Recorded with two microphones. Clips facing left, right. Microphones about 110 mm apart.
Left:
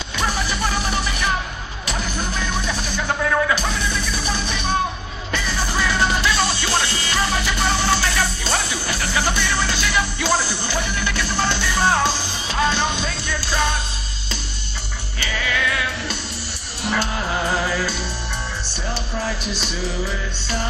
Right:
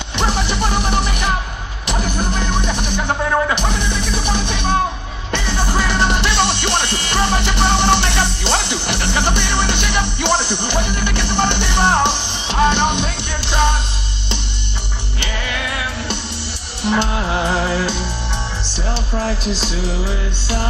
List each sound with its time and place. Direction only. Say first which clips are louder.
0.2 s music: right 4 dB; 25° right (ahead or behind)
6.3 s music: right 4 dB; 70° right (ahead or behind)
7.1 s music: right 4 dB; 25° right (ahead or behind)
8.6 s music: right 4 dB; 75° right (ahead or behind)
9.0 s music: right 2 dB; 25° right (ahead or behind)
15.3 s music: left 2 dB; 45° right (ahead or behind)
16.8 s music: right 5 dB; 25° right (ahead or behind)
19.1 s music: right 6 dB; 35° right (ahead or behind)